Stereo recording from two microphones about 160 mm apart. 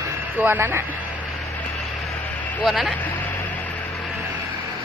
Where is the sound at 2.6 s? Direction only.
Centre (ahead or behind).